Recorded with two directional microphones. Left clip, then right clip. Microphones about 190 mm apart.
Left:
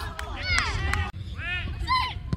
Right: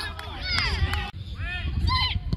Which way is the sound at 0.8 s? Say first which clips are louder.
Left 1 dB; 20° left (ahead or behind).